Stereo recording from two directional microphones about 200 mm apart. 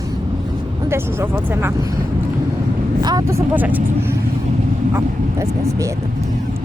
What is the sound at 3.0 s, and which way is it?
Speech, 15° right (ahead or behind).